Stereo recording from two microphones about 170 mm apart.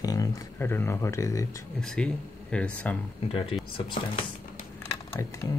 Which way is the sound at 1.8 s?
5° left (ahead or behind).